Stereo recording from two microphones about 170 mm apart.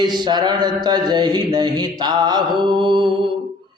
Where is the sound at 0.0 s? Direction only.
25° right (ahead or behind).